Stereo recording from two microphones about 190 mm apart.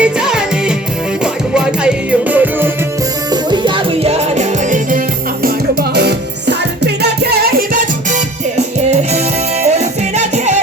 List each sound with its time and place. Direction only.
0.0 s music: 5° right (ahead or behind)
3.5 s music: 30° right (ahead or behind)
5.9 s music: 60° right (ahead or behind)
8.5 s music: 35° right (ahead or behind)